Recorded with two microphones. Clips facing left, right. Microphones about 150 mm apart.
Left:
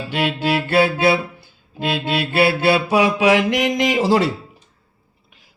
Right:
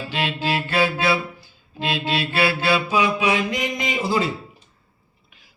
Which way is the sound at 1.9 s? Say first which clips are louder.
Left 3 dB; 60° left (ahead or behind).